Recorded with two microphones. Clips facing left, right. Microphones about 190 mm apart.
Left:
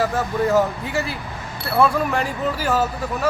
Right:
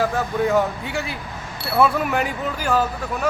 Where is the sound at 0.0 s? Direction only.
Centre (ahead or behind).